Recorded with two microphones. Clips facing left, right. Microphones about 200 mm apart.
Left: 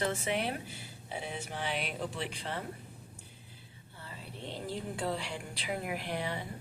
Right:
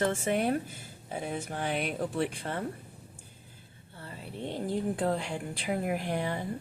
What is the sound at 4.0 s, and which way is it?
A woman's voice, 50° right (ahead or behind).